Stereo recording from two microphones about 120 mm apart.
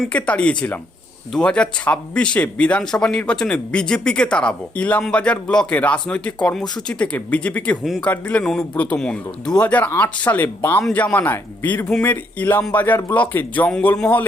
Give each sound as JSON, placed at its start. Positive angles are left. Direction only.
{"t": 0.1, "sound": "speech", "side_deg": 10}